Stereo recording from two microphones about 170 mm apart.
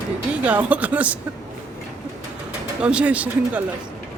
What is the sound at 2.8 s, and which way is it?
Speech, 5° right (ahead or behind).